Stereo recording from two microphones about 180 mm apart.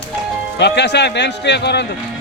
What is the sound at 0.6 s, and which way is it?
A man's voice, 70° left (ahead or behind).